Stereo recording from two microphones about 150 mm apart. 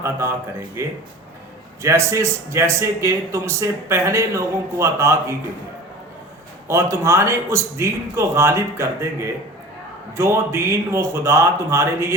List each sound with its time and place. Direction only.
0.0 s a man's voice: 15° right (ahead or behind)
6.7 s speech: 20° right (ahead or behind)